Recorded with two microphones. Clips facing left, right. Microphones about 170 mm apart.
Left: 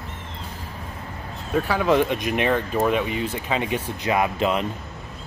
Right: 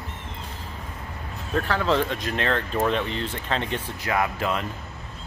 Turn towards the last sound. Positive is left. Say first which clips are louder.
# left 4 dB
turn(degrees=20)  # may be behind; listen again after turning